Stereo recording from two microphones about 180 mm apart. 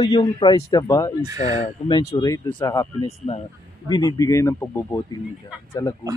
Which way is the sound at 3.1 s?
35° left (ahead or behind).